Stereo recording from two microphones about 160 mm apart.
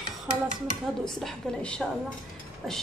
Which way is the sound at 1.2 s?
5° left (ahead or behind).